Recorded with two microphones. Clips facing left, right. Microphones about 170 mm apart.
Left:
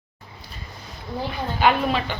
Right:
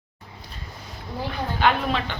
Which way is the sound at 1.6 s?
10° left (ahead or behind).